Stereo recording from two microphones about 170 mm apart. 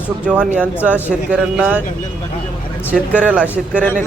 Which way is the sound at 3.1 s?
5° right (ahead or behind).